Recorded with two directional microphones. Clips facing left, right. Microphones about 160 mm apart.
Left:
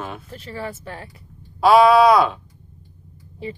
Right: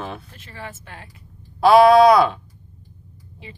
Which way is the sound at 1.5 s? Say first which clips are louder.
Right 1 dB; centre (ahead or behind).